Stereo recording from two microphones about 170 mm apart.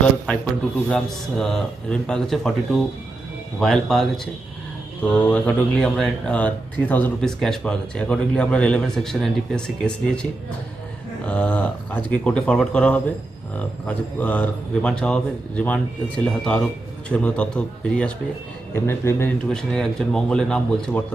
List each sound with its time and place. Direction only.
0.8 s speech: 5° left (ahead or behind)
11.2 s a man's voice: 10° left (ahead or behind)
19.5 s speech: centre (ahead or behind)